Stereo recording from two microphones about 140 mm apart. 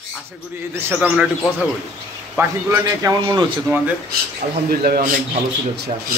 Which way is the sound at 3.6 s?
10° right (ahead or behind).